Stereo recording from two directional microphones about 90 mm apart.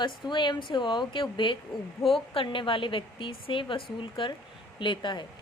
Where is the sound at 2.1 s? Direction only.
85° left.